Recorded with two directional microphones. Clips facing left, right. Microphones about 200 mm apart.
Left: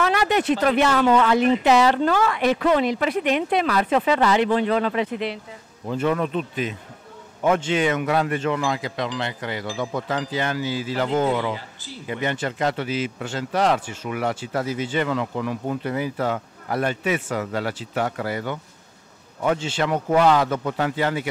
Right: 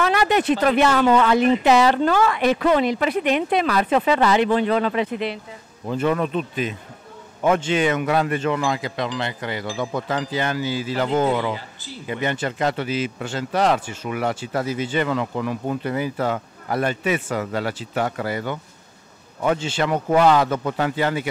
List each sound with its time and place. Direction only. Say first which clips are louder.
0.0 s speech: right 1 dB; 10° right (ahead or behind)